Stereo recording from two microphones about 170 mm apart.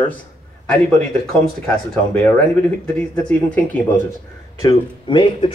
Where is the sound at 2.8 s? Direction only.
5° left (ahead or behind).